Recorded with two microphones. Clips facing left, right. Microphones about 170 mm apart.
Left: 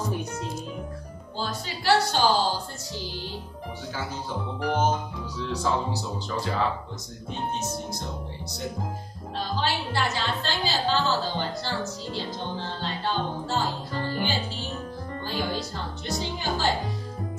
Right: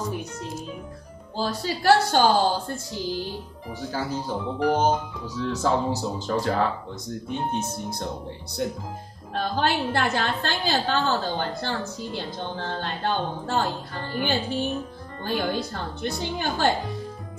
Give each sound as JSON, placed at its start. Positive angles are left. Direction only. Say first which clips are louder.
{"t": 1.4, "sound": "speech", "louder": "right 6 dB", "side_deg": -35}
{"t": 1.9, "sound": "a woman's voice", "louder": "right 3 dB", "side_deg": -50}
{"t": 3.9, "sound": "speech", "louder": "right 5 dB", "side_deg": -40}
{"t": 6.2, "sound": "a woman's voice", "louder": "right 6 dB", "side_deg": -50}
{"t": 9.3, "sound": "a woman's voice", "louder": "right 4 dB", "side_deg": -55}
{"t": 12.1, "sound": "music", "louder": "even", "side_deg": -55}